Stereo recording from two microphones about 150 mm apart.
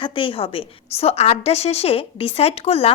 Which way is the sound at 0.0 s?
35° left (ahead or behind).